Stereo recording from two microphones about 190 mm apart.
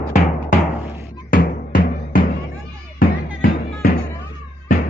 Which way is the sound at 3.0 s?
50° left (ahead or behind).